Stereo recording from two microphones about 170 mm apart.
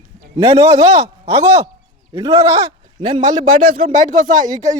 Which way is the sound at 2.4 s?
20° right (ahead or behind).